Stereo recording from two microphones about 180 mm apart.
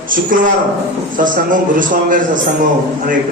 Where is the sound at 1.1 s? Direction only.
50° right (ahead or behind).